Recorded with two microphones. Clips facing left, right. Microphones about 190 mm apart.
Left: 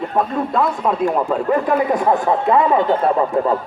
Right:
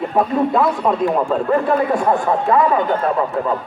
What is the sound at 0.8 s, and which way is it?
Speech, centre (ahead or behind).